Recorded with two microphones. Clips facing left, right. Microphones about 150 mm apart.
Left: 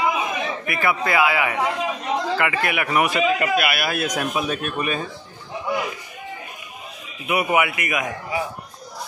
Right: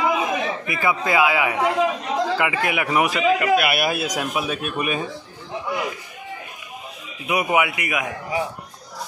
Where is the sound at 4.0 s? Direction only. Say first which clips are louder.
Left 1 dB; 5° right (ahead or behind).